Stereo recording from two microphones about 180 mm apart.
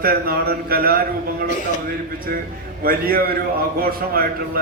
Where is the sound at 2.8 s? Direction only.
55° right (ahead or behind).